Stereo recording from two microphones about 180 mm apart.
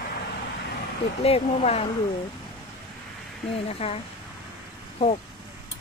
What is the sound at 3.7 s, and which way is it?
Speech, 35° left (ahead or behind).